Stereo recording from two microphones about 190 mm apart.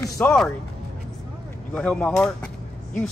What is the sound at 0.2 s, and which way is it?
Speech, 10° left (ahead or behind).